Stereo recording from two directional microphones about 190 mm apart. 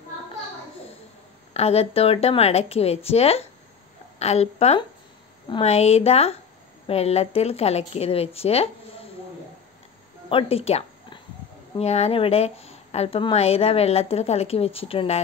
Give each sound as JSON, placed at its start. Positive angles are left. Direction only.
{"t": 1.5, "sound": "a woman's voice", "side_deg": 35}
{"t": 10.3, "sound": "a woman's voice", "side_deg": 30}